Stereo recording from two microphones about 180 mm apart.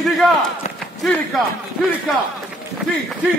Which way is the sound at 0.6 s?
40° left (ahead or behind).